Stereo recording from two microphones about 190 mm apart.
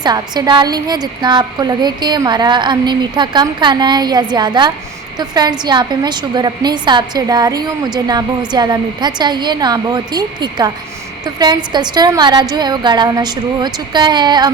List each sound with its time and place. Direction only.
0.0 s a woman's voice: 20° right (ahead or behind)